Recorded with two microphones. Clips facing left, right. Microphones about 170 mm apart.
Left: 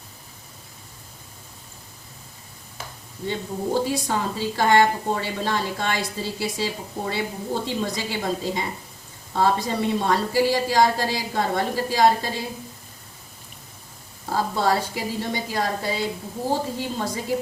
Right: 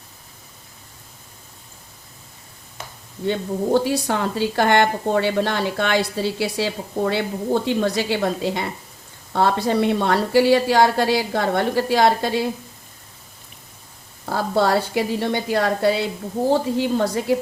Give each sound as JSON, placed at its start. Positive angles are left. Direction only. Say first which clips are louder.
{"t": 3.2, "sound": "a woman's voice", "louder": "right 5 dB", "side_deg": -65}
{"t": 14.3, "sound": "a woman's voice", "louder": "right 3 dB", "side_deg": -65}